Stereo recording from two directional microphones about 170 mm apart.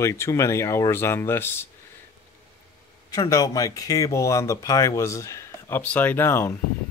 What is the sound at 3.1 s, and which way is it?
Speech, 20° left (ahead or behind).